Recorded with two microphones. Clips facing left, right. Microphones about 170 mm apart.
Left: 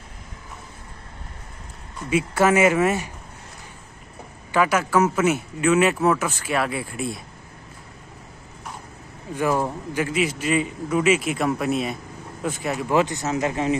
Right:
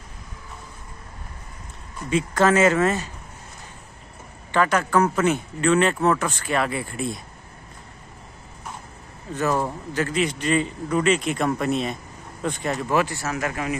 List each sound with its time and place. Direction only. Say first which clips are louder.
2.0 s speech: even; 10° left (ahead or behind)
4.5 s speech: even; 10° left (ahead or behind)
9.3 s speech: left 1 dB; 10° left (ahead or behind)
12.8 s speech: left 3 dB; 20° left (ahead or behind)